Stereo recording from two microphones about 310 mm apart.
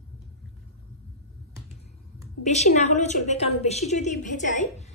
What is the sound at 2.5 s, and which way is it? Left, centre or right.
A woman's voice, left.